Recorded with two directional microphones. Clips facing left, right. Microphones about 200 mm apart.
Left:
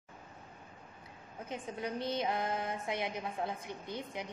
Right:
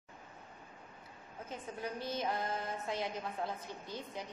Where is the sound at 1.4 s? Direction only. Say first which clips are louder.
Left 3 dB; 15° left (ahead or behind).